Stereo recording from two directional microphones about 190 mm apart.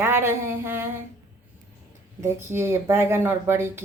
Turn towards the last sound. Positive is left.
turn(degrees=-10)  # may be behind; listen again after turning